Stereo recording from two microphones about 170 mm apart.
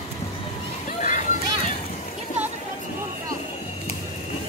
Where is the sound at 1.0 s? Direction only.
45° left (ahead or behind).